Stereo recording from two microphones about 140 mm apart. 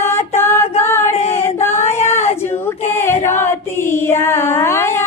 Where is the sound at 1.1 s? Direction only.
50° left (ahead or behind).